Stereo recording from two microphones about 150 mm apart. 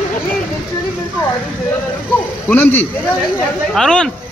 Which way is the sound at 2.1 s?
15° left (ahead or behind).